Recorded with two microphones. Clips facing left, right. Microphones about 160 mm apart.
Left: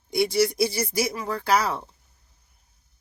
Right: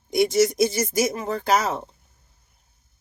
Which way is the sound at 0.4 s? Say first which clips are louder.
Right 3 dB; 20° right (ahead or behind).